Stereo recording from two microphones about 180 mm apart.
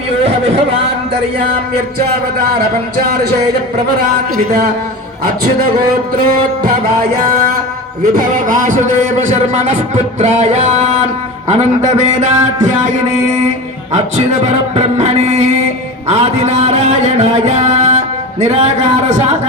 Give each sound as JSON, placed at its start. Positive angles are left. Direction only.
{"t": 8.1, "sound": "a man's voice", "side_deg": -50}
{"t": 9.5, "sound": "music", "side_deg": -40}
{"t": 13.9, "sound": "music", "side_deg": -40}